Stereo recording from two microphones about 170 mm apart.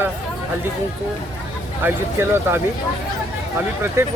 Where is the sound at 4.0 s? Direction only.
15° right (ahead or behind).